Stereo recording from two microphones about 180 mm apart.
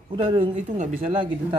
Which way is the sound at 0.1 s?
30° right (ahead or behind).